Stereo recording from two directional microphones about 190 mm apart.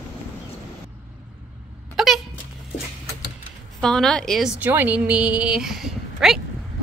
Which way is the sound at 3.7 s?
5° left (ahead or behind).